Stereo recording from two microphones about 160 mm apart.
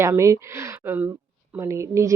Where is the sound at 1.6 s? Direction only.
20° right (ahead or behind).